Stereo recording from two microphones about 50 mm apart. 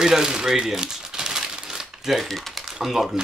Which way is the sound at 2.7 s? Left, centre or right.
Centre.